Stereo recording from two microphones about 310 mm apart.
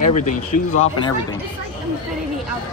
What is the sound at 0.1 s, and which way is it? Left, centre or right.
Speech, left.